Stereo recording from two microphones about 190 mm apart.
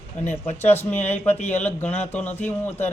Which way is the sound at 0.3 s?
35° left (ahead or behind).